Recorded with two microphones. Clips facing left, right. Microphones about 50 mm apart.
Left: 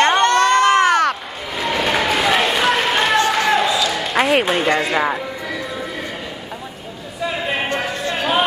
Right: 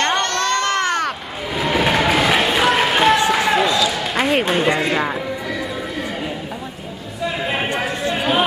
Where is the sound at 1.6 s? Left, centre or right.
Centre.